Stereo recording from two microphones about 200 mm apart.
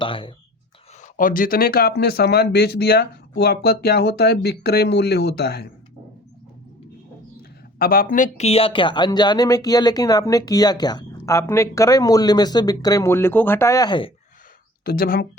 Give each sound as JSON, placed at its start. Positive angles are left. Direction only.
{"t": 0.0, "sound": "speech", "side_deg": 25}
{"t": 1.0, "sound": "speech", "side_deg": 45}
{"t": 7.8, "sound": "speech", "side_deg": 45}
{"t": 8.1, "sound": "speech", "side_deg": 35}
{"t": 14.8, "sound": "speech", "side_deg": 50}